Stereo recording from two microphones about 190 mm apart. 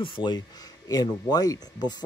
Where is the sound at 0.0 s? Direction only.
25° left (ahead or behind).